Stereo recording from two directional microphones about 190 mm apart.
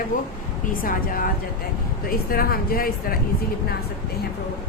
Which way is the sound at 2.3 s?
50° left (ahead or behind).